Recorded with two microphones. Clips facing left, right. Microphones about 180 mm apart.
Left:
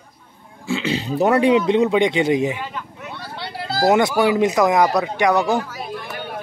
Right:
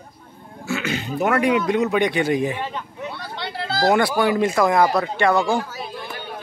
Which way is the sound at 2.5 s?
25° right (ahead or behind).